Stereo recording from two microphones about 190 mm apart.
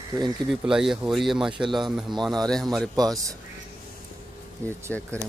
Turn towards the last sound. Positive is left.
turn(degrees=10)  # may be behind; listen again after turning